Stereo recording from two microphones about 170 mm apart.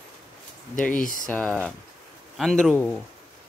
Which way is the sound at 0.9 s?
55° left (ahead or behind).